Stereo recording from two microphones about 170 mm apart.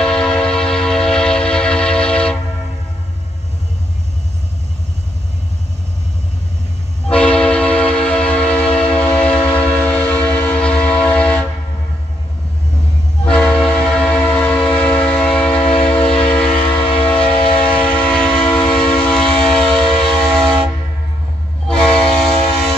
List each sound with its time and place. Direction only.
0.0 s a sound: 5° left (ahead or behind)
7.1 s train: 5° left (ahead or behind)
13.2 s train: 5° left (ahead or behind)
16.8 s train: 35° left (ahead or behind)
17.1 s train: 5° left (ahead or behind)
21.6 s train: 5° left (ahead or behind)